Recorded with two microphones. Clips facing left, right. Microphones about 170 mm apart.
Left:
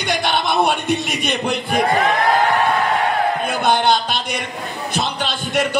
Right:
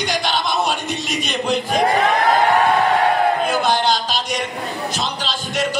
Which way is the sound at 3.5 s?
60° left (ahead or behind).